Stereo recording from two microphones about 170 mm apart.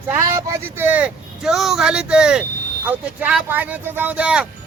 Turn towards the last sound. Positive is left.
turn(degrees=-5)  # may be behind; listen again after turning